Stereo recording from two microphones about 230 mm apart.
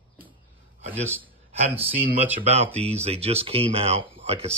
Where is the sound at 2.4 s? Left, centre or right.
Right.